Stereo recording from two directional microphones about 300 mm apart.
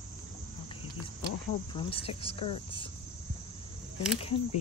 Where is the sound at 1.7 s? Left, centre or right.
Centre.